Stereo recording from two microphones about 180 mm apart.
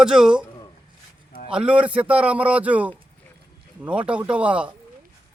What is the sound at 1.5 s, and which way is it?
A man's voice, 5° right (ahead or behind).